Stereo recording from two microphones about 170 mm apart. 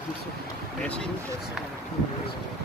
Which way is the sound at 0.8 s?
5° left (ahead or behind).